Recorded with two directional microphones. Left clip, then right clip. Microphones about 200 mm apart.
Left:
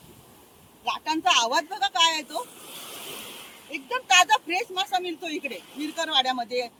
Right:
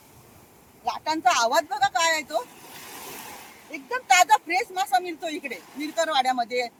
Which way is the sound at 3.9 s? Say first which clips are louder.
Right 1 dB; 15° right (ahead or behind).